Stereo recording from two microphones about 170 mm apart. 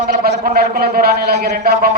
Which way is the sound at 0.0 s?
55° right (ahead or behind).